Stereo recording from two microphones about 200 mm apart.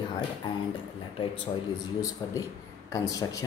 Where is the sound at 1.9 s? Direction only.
15° left (ahead or behind).